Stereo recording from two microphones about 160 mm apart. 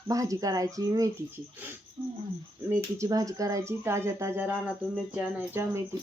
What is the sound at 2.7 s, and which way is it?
Speech, 20° right (ahead or behind).